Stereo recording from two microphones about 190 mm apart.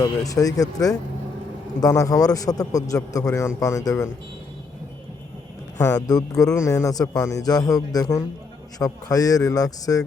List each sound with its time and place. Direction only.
0.0 s a man's voice: 20° left (ahead or behind)
5.8 s a man's voice: 20° left (ahead or behind)